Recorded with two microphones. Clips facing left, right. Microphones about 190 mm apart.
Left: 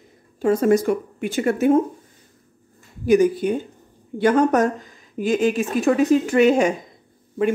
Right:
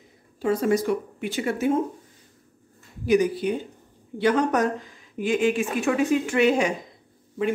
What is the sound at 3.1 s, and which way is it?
Speech, 45° left (ahead or behind).